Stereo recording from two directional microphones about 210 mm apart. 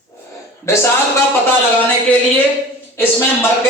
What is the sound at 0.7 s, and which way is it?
Speech, 15° left (ahead or behind).